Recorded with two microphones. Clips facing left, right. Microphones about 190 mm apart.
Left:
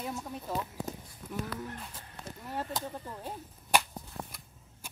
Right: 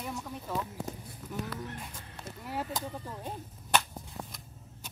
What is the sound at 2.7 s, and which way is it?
Speech, centre (ahead or behind).